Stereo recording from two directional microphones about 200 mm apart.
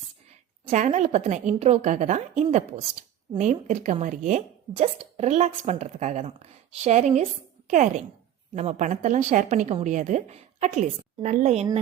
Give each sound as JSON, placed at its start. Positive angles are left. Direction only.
{"t": 0.7, "sound": "speech", "side_deg": -35}